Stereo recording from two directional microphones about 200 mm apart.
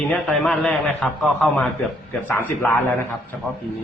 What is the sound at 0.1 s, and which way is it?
A man's voice, 5° left (ahead or behind).